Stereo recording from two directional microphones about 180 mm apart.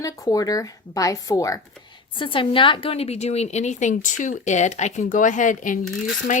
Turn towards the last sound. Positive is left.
turn(degrees=45)  # may be behind; listen again after turning